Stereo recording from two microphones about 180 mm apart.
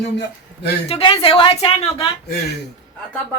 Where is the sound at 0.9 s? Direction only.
30° left (ahead or behind).